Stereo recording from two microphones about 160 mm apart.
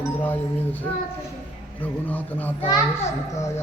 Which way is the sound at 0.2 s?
10° left (ahead or behind).